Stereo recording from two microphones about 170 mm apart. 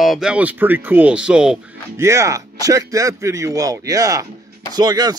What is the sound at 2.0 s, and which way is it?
Speech, 20° right (ahead or behind).